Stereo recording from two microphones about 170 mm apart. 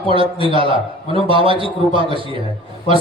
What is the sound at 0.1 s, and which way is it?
A man's voice, 30° right (ahead or behind).